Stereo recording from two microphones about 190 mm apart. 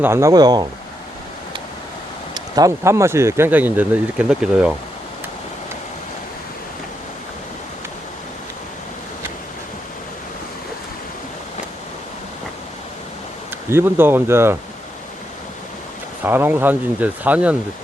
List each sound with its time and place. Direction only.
0.0 s speech: 15° right (ahead or behind)
2.3 s speech: 20° right (ahead or behind)
13.7 s speech: 10° right (ahead or behind)
16.2 s speech: 10° right (ahead or behind)